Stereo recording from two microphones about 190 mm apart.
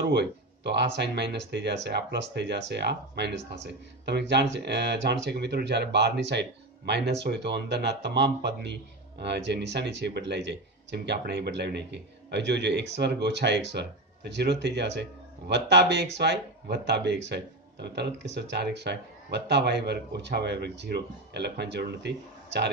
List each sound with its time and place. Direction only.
0.1 s speech: 65° right (ahead or behind)